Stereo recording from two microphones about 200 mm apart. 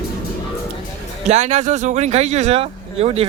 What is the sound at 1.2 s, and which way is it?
Speech, 35° right (ahead or behind).